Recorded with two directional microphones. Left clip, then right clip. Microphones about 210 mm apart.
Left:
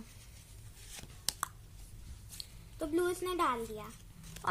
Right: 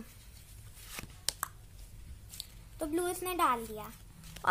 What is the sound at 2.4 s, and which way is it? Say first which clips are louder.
A woman's voice: right 1 dB; 40° right (ahead or behind).